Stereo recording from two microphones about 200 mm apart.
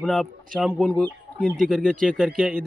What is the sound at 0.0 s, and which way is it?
A man's voice, centre (ahead or behind).